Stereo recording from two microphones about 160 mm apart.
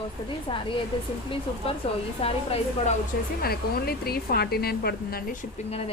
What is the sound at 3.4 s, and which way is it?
A woman's voice, 75° left (ahead or behind).